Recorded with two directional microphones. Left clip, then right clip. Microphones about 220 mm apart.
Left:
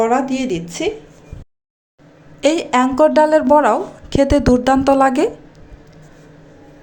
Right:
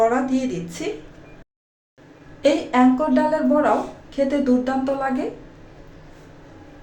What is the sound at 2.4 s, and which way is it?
Speech, 45° left (ahead or behind).